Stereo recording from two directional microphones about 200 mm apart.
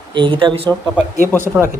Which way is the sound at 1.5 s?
10° right (ahead or behind).